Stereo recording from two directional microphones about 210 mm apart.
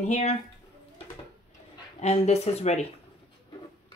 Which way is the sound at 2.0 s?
30° left (ahead or behind).